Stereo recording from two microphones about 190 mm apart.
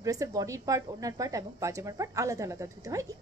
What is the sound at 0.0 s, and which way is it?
A woman's voice, 15° right (ahead or behind).